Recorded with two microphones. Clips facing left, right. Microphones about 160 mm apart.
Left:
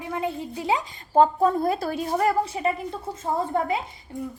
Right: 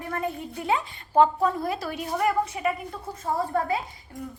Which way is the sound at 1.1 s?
35° left (ahead or behind).